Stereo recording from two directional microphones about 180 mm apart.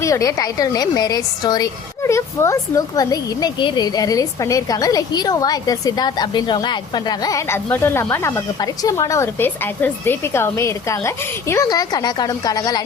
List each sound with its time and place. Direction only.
0.0 s a woman's voice: 15° left (ahead or behind)